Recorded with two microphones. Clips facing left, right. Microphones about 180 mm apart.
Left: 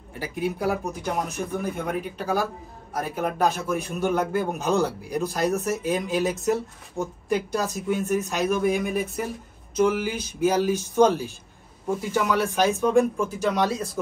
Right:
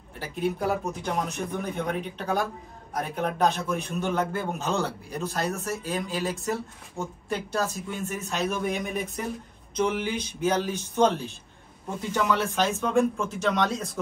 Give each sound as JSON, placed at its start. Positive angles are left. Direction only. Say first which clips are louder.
{"t": 0.2, "sound": "a man's voice", "louder": "left 1 dB", "side_deg": 10}